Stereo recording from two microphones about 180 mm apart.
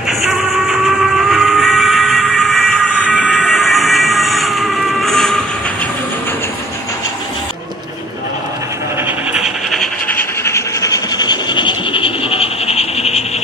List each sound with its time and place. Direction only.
1.3 s train: centre (ahead or behind)
9.0 s pant: 5° right (ahead or behind); by 13.2 s 35° left (ahead or behind)